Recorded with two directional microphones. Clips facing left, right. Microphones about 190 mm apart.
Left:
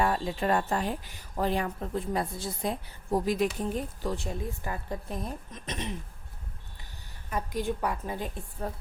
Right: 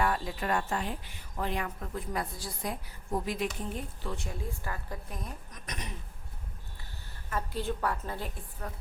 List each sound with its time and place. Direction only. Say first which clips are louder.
0.0 s speech: left 3 dB; 25° left (ahead or behind)
4.4 s a woman's voice: left 4 dB; 20° left (ahead or behind)
7.3 s a woman's voice: left 3 dB; 15° left (ahead or behind)
8.6 s a woman's voice: left 6 dB; 30° left (ahead or behind)